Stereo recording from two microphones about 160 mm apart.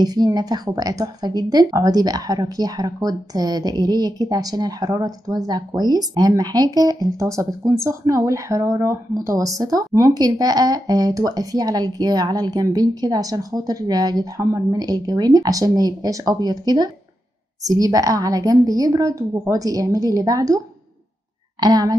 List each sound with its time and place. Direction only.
0.0 s a woman's voice: 25° right (ahead or behind)